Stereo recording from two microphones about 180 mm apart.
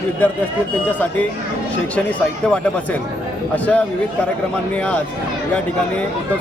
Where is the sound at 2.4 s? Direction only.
5° left (ahead or behind).